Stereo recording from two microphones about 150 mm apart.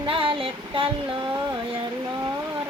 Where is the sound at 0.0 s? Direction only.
35° right (ahead or behind).